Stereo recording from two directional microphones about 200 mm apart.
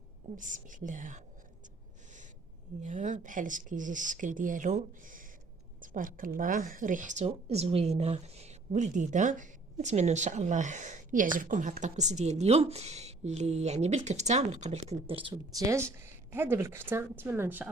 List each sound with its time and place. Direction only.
0.3 s a woman's voice: 40° right (ahead or behind)
2.8 s a woman's voice: 40° right (ahead or behind); by 17.7 s 10° right (ahead or behind)